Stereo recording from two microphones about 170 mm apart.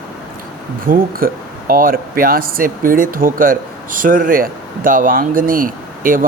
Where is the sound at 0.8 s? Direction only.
55° right (ahead or behind).